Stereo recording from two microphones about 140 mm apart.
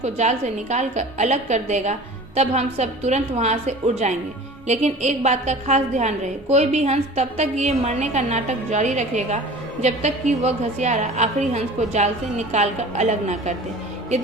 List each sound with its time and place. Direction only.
0.0 s a woman's voice: 55° right (ahead or behind)